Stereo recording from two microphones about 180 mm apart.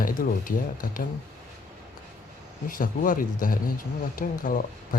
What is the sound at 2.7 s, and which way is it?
A man's voice, 50° left (ahead or behind).